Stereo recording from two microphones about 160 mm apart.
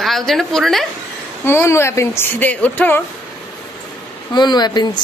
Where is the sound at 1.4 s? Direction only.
15° left (ahead or behind).